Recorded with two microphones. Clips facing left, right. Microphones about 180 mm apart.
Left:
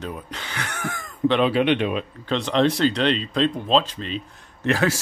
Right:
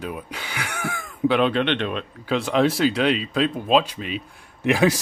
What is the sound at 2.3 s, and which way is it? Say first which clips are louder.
Speech: even; 5° right (ahead or behind).